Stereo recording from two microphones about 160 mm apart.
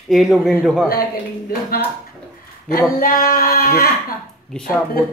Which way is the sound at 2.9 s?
65° left (ahead or behind).